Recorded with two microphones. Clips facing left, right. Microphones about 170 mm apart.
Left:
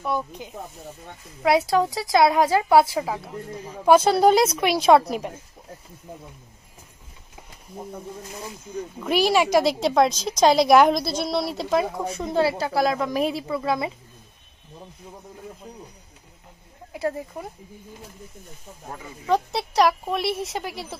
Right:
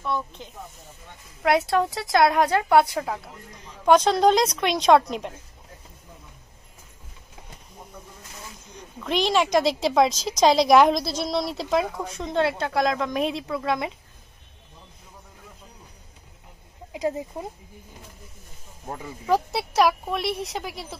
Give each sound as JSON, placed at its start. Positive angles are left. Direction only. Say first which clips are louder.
{"t": 0.0, "sound": "speech", "louder": "left 2 dB", "side_deg": 10}
{"t": 1.4, "sound": "a woman's voice", "louder": "left 2 dB", "side_deg": 0}
{"t": 9.0, "sound": "a woman's voice", "louder": "left 2 dB", "side_deg": 10}
{"t": 16.9, "sound": "speech", "louder": "even", "side_deg": -15}
{"t": 19.2, "sound": "a woman's voice", "louder": "even", "side_deg": -5}